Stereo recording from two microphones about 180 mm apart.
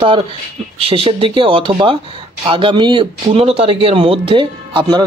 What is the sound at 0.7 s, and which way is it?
Speech, 30° right (ahead or behind).